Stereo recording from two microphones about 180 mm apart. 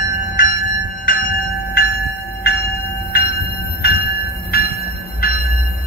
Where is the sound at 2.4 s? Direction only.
60° left (ahead or behind).